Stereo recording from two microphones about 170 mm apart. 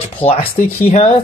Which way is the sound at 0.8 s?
40° left (ahead or behind).